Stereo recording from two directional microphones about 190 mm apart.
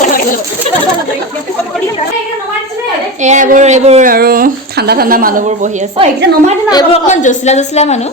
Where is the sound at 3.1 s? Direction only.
40° right (ahead or behind).